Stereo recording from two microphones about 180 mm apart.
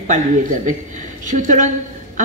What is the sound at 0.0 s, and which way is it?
A man's voice, 45° right (ahead or behind).